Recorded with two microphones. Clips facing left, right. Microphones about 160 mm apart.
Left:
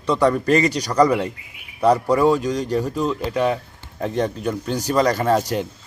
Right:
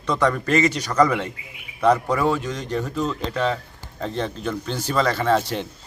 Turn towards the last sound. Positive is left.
turn(degrees=40)  # may be behind; listen again after turning